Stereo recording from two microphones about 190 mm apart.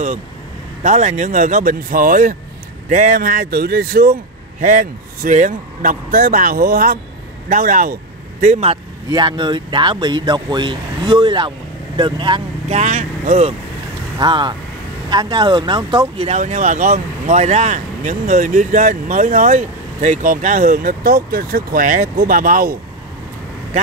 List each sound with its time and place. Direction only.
0.8 s speech: 40° right (ahead or behind)
3.4 s a man's voice: 55° right (ahead or behind); by 12.7 s 25° right (ahead or behind)
12.7 s speech: 40° right (ahead or behind)
14.1 s speech: 25° right (ahead or behind); by 22.8 s 50° right (ahead or behind)